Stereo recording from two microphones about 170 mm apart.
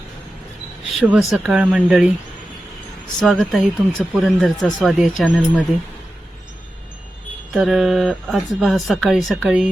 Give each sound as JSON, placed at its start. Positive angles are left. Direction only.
{"t": 0.9, "sound": "speech", "side_deg": -5}
{"t": 3.2, "sound": "speech", "side_deg": 0}
{"t": 7.5, "sound": "speech", "side_deg": 0}